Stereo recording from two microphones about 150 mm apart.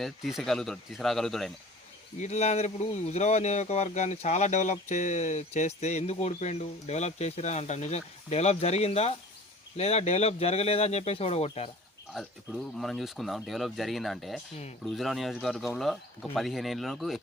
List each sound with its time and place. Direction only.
0.0 s speech: centre (ahead or behind)
2.1 s speech: 50° left (ahead or behind)
12.1 s speech: centre (ahead or behind)